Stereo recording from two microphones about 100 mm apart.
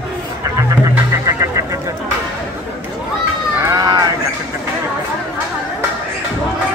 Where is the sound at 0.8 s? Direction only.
30° right (ahead or behind).